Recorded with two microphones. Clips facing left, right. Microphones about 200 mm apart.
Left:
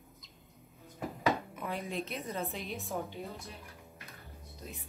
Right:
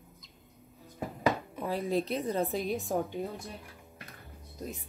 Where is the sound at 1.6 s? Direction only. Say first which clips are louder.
Right 7 dB; 35° right (ahead or behind).